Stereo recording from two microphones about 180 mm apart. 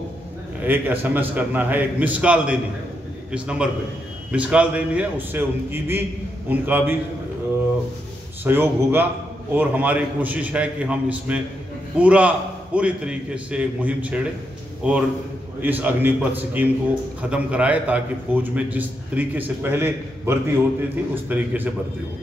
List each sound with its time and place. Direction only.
0.7 s a man's voice: 10° right (ahead or behind)
8.5 s a man's voice: 10° right (ahead or behind)